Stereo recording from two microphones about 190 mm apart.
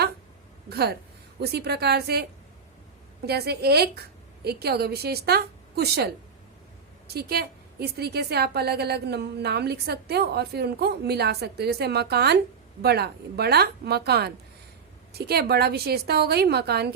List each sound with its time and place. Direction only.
0.7 s a woman's voice: 55° right (ahead or behind)
3.2 s a woman's voice: 55° right (ahead or behind)
7.1 s a woman's voice: 55° right (ahead or behind)